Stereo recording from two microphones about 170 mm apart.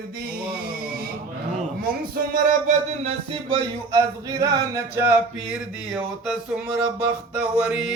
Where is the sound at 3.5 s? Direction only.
20° right (ahead or behind).